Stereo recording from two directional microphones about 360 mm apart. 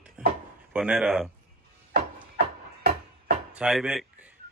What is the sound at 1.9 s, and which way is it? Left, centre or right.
Music, right.